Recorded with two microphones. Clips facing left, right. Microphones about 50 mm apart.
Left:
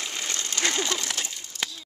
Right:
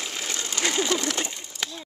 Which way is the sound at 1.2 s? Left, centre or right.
Centre.